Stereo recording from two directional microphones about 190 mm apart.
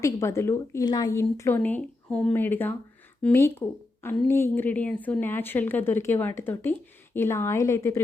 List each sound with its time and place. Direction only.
0.0 s a woman's voice: 15° left (ahead or behind)